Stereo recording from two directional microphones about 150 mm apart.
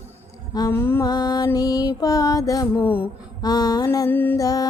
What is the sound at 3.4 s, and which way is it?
Female singing, 25° left (ahead or behind).